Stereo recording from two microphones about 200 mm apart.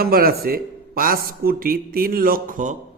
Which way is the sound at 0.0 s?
50° right (ahead or behind).